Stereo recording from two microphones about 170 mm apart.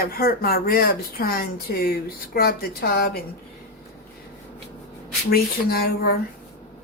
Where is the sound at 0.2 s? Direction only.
60° left (ahead or behind).